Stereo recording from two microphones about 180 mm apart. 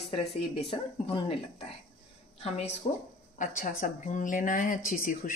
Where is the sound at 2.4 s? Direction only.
35° left (ahead or behind).